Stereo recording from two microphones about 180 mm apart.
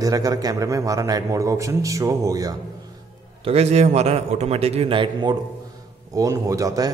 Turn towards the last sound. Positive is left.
turn(degrees=-20)  # may be behind; listen again after turning